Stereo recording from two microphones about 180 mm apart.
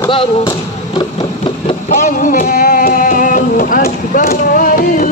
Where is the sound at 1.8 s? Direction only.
45° left (ahead or behind).